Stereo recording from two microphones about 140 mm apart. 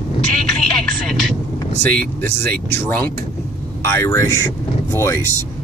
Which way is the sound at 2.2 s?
15° left (ahead or behind).